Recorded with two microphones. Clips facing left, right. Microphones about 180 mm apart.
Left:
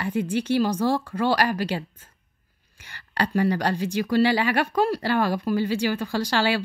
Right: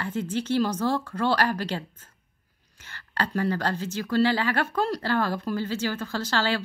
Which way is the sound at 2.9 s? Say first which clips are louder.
Left 4 dB; 15° left (ahead or behind).